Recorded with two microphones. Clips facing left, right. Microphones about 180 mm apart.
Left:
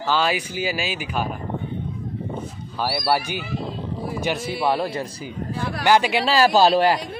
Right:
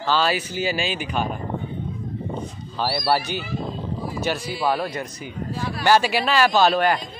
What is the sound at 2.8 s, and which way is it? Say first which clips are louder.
Speech: even; 10° left (ahead or behind).